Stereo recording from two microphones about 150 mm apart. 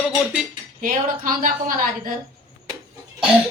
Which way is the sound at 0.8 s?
65° right (ahead or behind).